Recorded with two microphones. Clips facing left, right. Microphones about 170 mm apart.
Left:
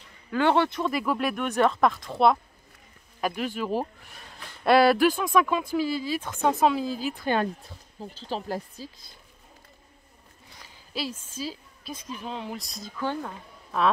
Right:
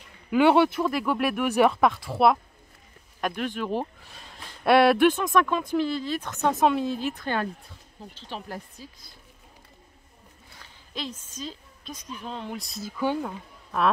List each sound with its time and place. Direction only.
0.3 s speech: 10° right (ahead or behind)
8.0 s speech: 35° left (ahead or behind)
10.6 s a sound: 10° left (ahead or behind)
12.2 s speech: 5° left (ahead or behind)